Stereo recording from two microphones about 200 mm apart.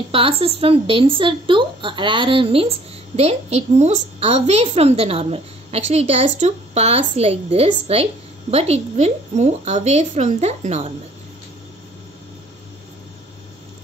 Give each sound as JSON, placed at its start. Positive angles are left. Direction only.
{"t": 0.1, "sound": "a woman's voice", "side_deg": -30}